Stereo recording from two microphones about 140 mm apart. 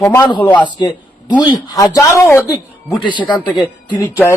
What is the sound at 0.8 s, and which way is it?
A man's voice, 30° left (ahead or behind).